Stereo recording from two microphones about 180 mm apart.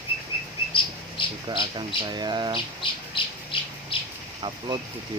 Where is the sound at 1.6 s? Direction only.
25° right (ahead or behind).